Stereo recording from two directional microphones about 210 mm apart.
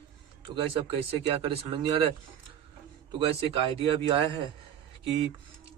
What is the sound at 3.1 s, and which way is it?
Speech, 25° right (ahead or behind).